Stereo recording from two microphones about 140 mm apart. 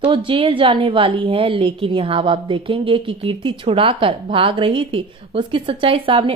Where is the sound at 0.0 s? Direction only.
35° right (ahead or behind).